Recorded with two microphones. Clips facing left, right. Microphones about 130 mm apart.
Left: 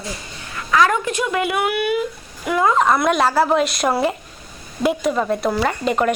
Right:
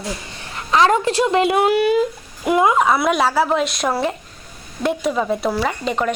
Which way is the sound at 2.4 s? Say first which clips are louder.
Right 2 dB; 20° right (ahead or behind).